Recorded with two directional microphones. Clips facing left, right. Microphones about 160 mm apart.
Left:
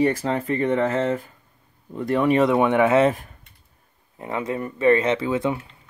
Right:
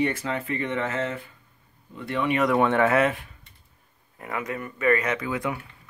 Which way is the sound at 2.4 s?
20° left (ahead or behind).